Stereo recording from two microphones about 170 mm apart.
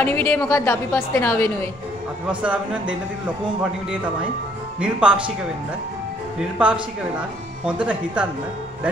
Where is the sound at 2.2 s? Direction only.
10° right (ahead or behind).